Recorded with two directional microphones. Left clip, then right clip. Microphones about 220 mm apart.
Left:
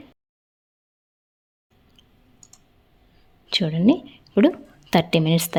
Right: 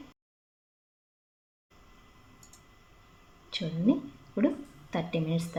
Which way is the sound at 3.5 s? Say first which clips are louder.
Left 10 dB; 50° left (ahead or behind).